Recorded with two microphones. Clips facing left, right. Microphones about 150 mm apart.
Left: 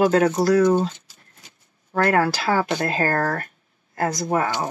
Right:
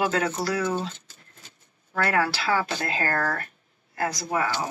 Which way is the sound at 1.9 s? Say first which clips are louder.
Left 5 dB; 45° left (ahead or behind).